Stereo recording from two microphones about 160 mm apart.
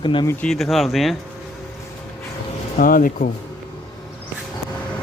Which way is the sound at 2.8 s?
60° left (ahead or behind).